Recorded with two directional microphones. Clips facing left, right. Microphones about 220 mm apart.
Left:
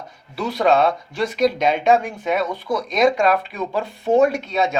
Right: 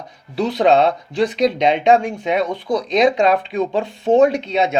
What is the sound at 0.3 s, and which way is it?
Speech, 15° right (ahead or behind).